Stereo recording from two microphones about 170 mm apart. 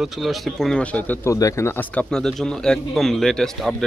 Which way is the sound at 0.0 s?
Centre (ahead or behind).